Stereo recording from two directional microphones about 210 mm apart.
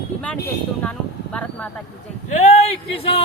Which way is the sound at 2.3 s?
30° left (ahead or behind).